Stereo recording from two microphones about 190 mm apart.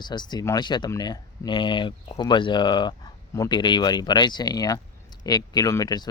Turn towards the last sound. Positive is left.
turn(degrees=20)  # may be behind; listen again after turning